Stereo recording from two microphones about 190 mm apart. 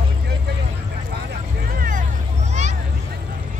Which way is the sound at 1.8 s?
45° right (ahead or behind).